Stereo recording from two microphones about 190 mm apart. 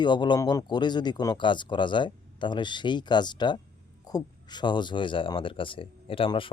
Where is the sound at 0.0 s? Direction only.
25° left (ahead or behind).